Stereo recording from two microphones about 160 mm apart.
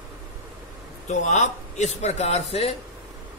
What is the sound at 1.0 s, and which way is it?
A man's voice, 50° left (ahead or behind).